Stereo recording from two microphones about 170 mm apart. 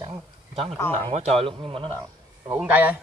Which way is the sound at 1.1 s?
35° right (ahead or behind).